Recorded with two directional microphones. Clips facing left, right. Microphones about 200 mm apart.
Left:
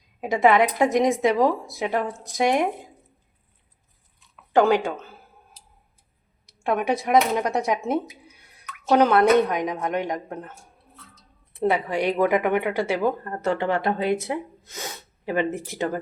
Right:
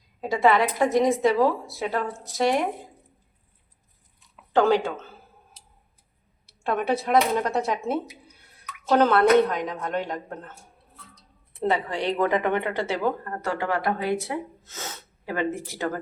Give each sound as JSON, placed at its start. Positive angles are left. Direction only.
{"t": 0.2, "sound": "a woman's voice", "side_deg": 20}
{"t": 4.5, "sound": "a woman's voice", "side_deg": 10}
{"t": 6.4, "sound": "a woman's voice", "side_deg": 15}
{"t": 11.7, "sound": "a woman's voice", "side_deg": 10}
{"t": 13.3, "sound": "speech", "side_deg": 25}